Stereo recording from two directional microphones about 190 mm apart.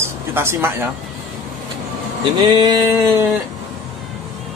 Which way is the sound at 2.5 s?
20° right (ahead or behind).